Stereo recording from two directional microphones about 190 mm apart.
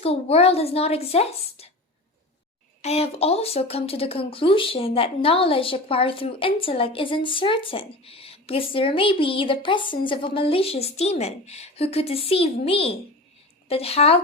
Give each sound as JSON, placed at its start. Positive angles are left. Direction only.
{"t": 0.0, "sound": "a woman's voice", "side_deg": 30}
{"t": 2.8, "sound": "a woman's voice", "side_deg": 35}